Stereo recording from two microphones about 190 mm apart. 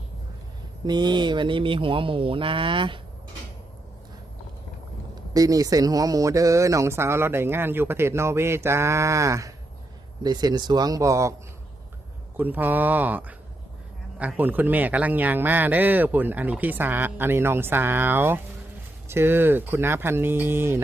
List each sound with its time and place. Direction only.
0.9 s speech: 20° right (ahead or behind)
5.3 s speech: 20° right (ahead or behind)
12.4 s speech: 10° right (ahead or behind)